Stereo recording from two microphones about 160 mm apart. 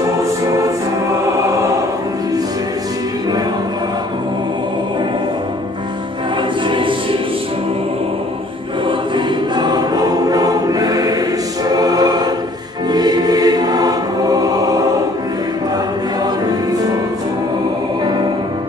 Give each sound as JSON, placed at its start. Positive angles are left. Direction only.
{"t": 6.7, "sound": "music", "side_deg": -30}
{"t": 8.8, "sound": "choir", "side_deg": -30}